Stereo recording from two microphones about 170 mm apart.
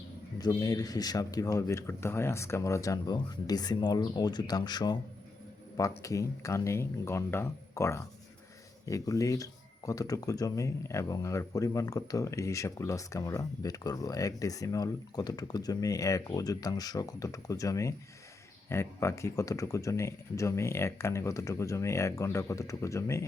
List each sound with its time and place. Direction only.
0.3 s speech: 20° left (ahead or behind)
6.0 s speech: 20° left (ahead or behind)